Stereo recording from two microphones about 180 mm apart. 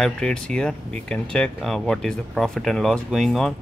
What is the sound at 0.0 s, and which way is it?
Speech, 5° left (ahead or behind).